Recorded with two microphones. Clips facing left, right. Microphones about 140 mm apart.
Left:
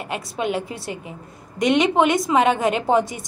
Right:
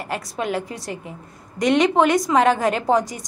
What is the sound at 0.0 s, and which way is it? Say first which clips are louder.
A woman's voice: left 1 dB; 25° left (ahead or behind).